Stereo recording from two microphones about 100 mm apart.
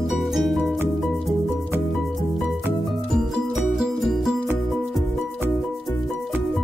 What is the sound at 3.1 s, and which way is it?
Music, centre (ahead or behind).